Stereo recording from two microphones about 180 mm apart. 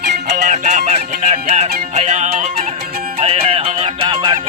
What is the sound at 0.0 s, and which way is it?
Music, 65° right (ahead or behind).